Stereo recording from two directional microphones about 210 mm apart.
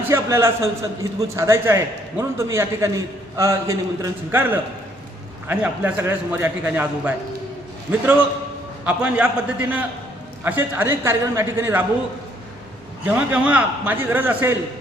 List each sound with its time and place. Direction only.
0.0 s a man's voice: 10° right (ahead or behind)
8.8 s a man's voice: 5° right (ahead or behind)
13.1 s a man's voice: 5° right (ahead or behind)